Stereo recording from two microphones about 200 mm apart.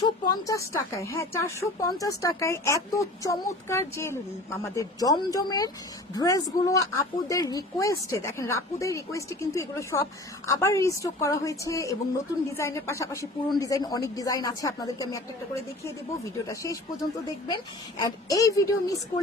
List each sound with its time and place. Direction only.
0.0 s a woman's voice: 15° left (ahead or behind)
18.3 s a woman's voice: 15° left (ahead or behind)